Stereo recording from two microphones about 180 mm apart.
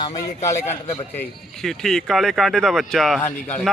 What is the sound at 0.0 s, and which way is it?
A man's voice, 20° left (ahead or behind).